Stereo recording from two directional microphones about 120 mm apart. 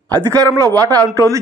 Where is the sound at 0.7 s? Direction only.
30° right (ahead or behind).